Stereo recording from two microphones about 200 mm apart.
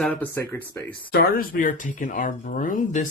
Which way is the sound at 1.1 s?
50° left (ahead or behind).